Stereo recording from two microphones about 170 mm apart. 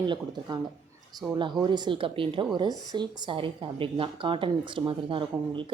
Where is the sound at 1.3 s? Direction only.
30° right (ahead or behind).